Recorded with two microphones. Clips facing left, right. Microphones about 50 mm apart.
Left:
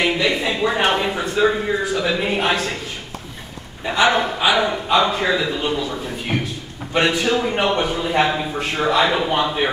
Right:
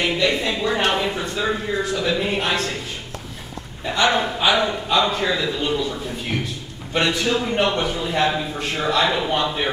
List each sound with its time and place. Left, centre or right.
0.0 s speech: centre
3.8 s a man's voice: centre